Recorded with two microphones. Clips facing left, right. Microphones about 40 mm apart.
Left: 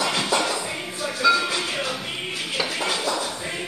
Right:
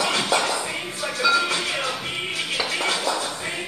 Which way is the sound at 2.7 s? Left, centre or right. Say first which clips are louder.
Right 4 dB; right.